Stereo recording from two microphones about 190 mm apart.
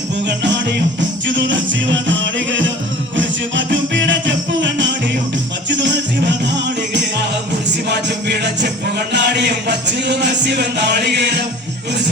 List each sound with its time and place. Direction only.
0.3 s music: 65° right (ahead or behind)
7.9 s music: 60° right (ahead or behind)